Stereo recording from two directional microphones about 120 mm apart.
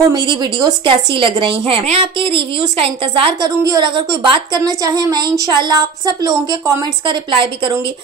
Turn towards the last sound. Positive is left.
turn(degrees=-45)  # may be behind; listen again after turning